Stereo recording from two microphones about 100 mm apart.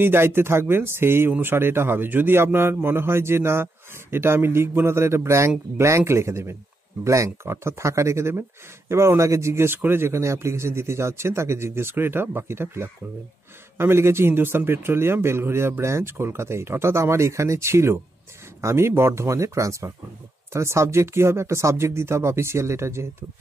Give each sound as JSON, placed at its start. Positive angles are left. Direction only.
{"t": 0.0, "sound": "speech", "side_deg": -20}